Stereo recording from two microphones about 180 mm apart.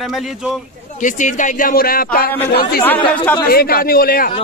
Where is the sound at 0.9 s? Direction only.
45° left (ahead or behind).